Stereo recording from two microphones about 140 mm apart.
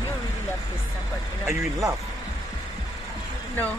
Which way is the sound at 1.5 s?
25° right (ahead or behind).